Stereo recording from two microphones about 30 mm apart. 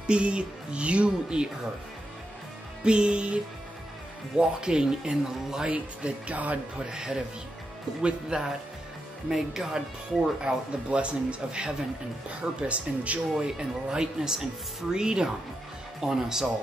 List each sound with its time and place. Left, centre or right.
0.0 s speech: right
2.8 s speech: right
4.4 s speech: right
5.7 s speech: right
6.8 s speech: right
8.3 s speech: right
9.3 s speech: centre
10.4 s speech: right
13.4 s speech: right
15.0 s speech: right
16.0 s speech: centre